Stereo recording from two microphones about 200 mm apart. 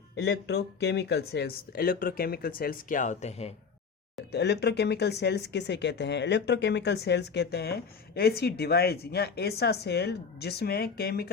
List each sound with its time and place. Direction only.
0.2 s speech: 55° left (ahead or behind); by 3.5 s 30° left (ahead or behind)
4.3 s speech: 55° left (ahead or behind)